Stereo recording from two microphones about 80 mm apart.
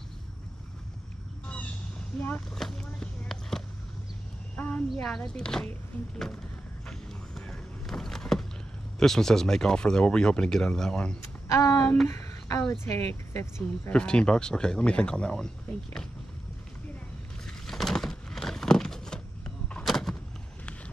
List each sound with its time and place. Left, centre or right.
2.1 s speech: centre
2.5 s a sound: centre
4.6 s a sound: centre
4.8 s speech: centre
6.9 s vehicle: centre
9.0 s speech: centre
11.5 s speech: left
12.1 s speech: left
13.8 s speech: centre
17.5 s a sound: centre